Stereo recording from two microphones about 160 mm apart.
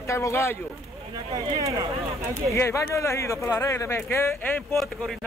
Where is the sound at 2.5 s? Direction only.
20° left (ahead or behind).